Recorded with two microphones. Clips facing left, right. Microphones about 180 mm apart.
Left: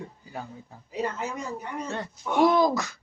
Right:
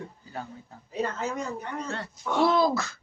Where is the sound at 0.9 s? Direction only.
15° left (ahead or behind).